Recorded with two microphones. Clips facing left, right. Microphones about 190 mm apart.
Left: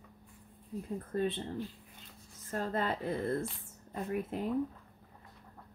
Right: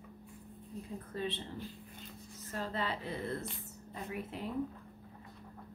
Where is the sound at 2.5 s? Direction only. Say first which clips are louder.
Left 4 dB; 50° left (ahead or behind).